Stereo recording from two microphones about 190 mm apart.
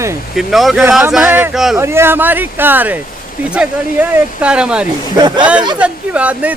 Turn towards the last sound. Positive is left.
turn(degrees=-5)  # may be behind; listen again after turning